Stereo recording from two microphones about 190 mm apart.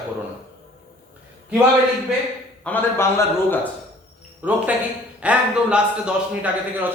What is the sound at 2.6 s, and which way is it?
A man's voice, 10° left (ahead or behind).